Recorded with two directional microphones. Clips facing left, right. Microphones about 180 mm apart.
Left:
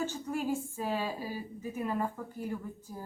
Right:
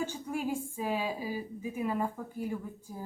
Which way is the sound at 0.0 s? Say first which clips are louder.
Even; 10° right (ahead or behind).